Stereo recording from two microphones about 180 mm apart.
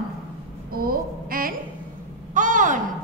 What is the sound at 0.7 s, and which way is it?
Speech, 55° right (ahead or behind).